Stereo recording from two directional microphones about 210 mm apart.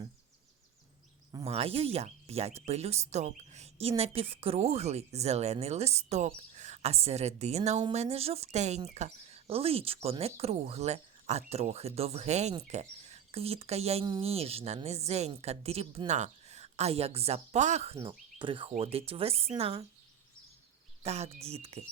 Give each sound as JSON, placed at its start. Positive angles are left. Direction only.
{"t": 1.5, "sound": "speech", "side_deg": -30}
{"t": 21.0, "sound": "speech", "side_deg": -30}